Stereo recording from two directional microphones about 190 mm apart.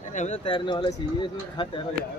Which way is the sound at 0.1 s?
40° left (ahead or behind).